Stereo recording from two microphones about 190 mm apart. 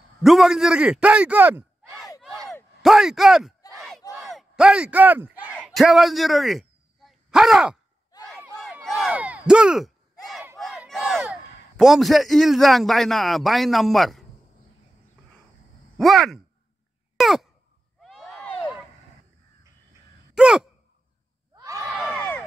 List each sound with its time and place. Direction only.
0.2 s a man's voice: centre (ahead or behind)
2.2 s a sound: centre (ahead or behind)
2.8 s speech: centre (ahead or behind)
3.7 s battle cry: centre (ahead or behind)
4.2 s speech: centre (ahead or behind)
8.8 s a sound: centre (ahead or behind)
10.6 s a man's voice: centre (ahead or behind)
16.0 s speech: centre (ahead or behind)
17.2 s a sound: centre (ahead or behind)
20.3 s sigh: 5° right (ahead or behind)
21.5 s crowd: 15° right (ahead or behind)